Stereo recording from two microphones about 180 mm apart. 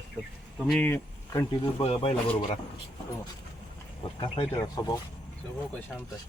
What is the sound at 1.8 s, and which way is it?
Speech, 35° left (ahead or behind).